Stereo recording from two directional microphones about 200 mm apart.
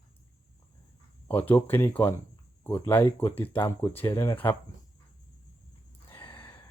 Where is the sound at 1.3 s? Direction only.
10° left (ahead or behind).